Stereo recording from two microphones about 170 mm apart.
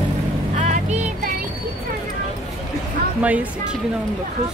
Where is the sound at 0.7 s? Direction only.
45° right (ahead or behind).